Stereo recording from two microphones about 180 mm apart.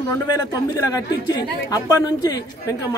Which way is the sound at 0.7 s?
20° left (ahead or behind).